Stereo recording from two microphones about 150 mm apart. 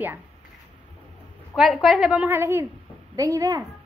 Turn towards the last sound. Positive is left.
turn(degrees=-25)  # may be behind; listen again after turning